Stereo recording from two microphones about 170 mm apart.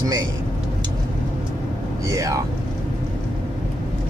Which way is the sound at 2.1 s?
20° right (ahead or behind).